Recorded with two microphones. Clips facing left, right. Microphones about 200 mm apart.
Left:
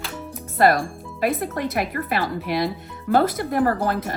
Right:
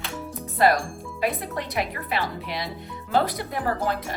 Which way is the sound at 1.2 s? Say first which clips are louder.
Left 4 dB; 50° left (ahead or behind).